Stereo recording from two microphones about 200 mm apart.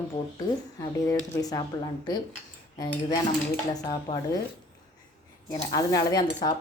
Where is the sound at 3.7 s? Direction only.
20° left (ahead or behind).